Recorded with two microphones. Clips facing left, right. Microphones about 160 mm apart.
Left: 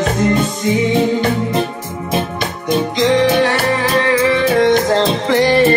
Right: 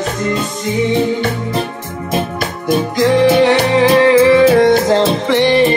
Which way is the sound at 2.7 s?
10° right (ahead or behind).